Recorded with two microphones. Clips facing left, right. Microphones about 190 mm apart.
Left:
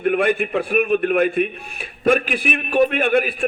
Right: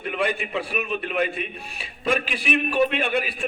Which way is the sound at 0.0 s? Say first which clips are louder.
Left 8 dB; 55° left (ahead or behind).